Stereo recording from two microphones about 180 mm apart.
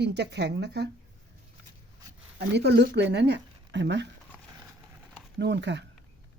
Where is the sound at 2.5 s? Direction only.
70° right (ahead or behind).